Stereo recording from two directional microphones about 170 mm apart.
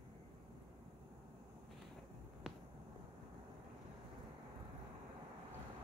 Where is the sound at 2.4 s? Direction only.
5° right (ahead or behind).